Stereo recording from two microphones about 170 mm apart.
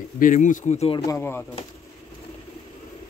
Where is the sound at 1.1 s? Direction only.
15° left (ahead or behind).